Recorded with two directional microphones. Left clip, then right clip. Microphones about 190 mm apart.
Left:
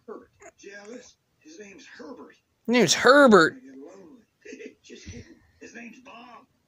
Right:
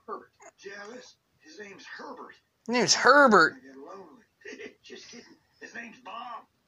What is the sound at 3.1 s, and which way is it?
Speech, 75° left (ahead or behind).